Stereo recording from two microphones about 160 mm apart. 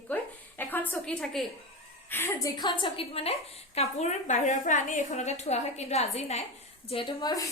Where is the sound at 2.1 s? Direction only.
15° left (ahead or behind).